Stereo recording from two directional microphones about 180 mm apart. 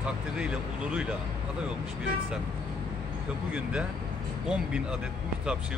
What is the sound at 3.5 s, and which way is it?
Speech, 5° right (ahead or behind).